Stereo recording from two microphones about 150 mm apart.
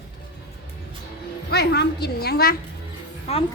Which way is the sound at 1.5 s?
90° left.